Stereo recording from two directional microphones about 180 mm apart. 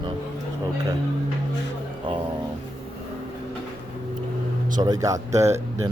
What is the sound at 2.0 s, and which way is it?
Speech, 25° right (ahead or behind).